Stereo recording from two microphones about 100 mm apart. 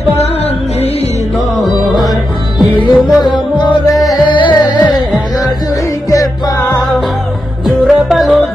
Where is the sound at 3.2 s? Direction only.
45° left (ahead or behind).